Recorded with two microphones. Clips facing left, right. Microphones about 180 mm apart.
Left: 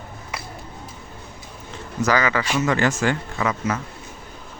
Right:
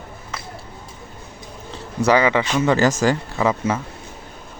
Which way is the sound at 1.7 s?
30° right (ahead or behind).